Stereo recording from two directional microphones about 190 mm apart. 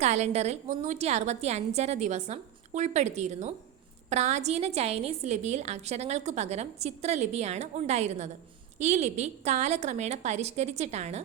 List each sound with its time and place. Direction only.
0.0 s a woman's voice: 35° right (ahead or behind)